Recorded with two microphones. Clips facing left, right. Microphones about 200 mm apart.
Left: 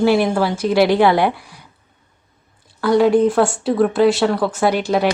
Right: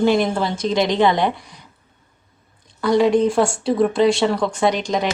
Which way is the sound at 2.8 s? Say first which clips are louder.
Left 2 dB; centre (ahead or behind).